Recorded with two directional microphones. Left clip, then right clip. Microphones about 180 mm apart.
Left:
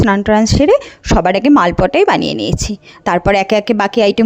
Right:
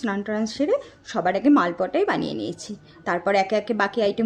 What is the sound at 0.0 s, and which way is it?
Speech, 45° left (ahead or behind).